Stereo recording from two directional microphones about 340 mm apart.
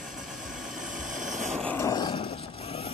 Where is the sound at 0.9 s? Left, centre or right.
Right.